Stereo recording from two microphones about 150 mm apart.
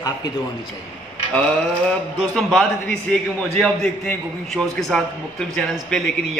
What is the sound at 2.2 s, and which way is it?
A man's voice, centre (ahead or behind).